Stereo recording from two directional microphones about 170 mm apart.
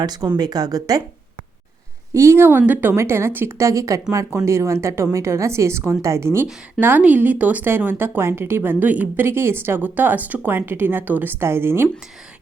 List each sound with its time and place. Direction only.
0.0 s speech: 25° right (ahead or behind)
2.1 s a woman's voice: 15° right (ahead or behind)